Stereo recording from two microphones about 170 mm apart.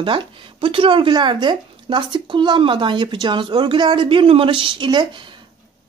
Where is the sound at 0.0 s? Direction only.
30° right (ahead or behind).